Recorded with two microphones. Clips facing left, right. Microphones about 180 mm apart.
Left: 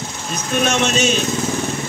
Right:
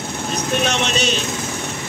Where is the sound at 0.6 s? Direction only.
50° left (ahead or behind).